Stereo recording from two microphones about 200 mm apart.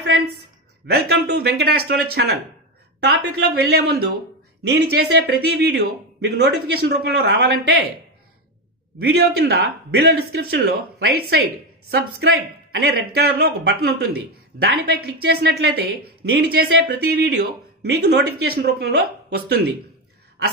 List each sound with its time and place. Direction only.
0.0 s a sound: 75° right (ahead or behind)
0.8 s speech: 55° right (ahead or behind)
9.0 s speech: 55° right (ahead or behind)